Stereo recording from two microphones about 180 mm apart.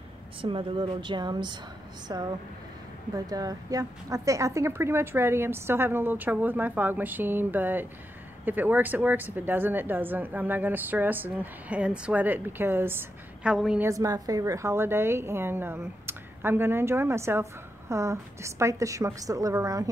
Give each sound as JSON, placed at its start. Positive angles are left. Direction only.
{"t": 0.4, "sound": "a woman's voice", "side_deg": -30}
{"t": 3.3, "sound": "a woman's voice", "side_deg": -20}
{"t": 13.8, "sound": "a woman's voice", "side_deg": -20}